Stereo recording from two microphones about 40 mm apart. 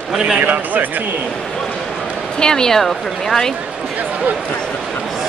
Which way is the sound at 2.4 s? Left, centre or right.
Centre.